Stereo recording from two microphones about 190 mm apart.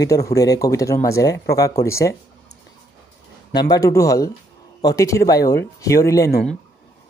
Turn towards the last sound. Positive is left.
turn(degrees=15)  # may be behind; listen again after turning